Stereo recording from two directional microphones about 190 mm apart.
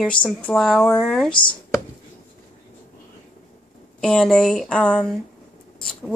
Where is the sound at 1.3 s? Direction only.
25° left (ahead or behind).